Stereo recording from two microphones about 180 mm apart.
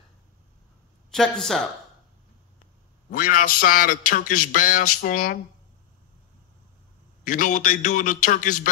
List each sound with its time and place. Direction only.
1.1 s speech: 5° left (ahead or behind)
3.1 s a man's voice: 45° left (ahead or behind)
7.2 s a man's voice: 45° left (ahead or behind)